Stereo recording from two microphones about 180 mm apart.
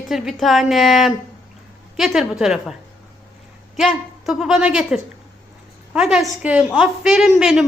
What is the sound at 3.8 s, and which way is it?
A woman's voice, centre (ahead or behind).